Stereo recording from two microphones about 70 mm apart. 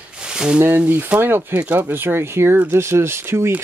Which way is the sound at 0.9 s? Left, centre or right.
Right.